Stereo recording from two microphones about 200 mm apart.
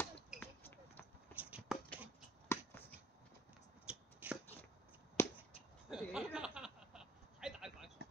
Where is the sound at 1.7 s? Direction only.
Centre (ahead or behind).